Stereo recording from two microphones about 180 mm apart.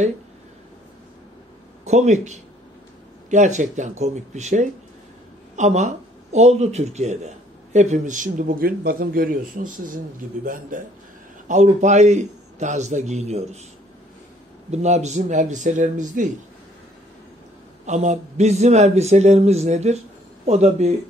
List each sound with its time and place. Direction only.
1.9 s speech: 40° right (ahead or behind)
14.7 s speech: 40° right (ahead or behind)
17.8 s speech: 40° right (ahead or behind)